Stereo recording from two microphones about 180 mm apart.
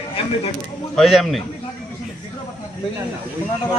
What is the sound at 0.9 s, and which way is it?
Speech, centre (ahead or behind).